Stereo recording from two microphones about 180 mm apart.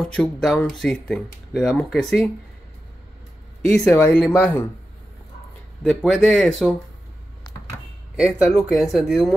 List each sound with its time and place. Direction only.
0.0 s speech: 5° left (ahead or behind)
3.6 s speech: 5° left (ahead or behind)
5.8 s speech: 5° left (ahead or behind)
8.2 s speech: 5° right (ahead or behind)